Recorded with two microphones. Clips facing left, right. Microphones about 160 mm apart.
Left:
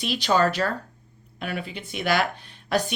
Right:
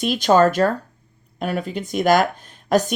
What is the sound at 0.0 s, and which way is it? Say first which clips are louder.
A woman's voice: right 7 dB; 45° right (ahead or behind).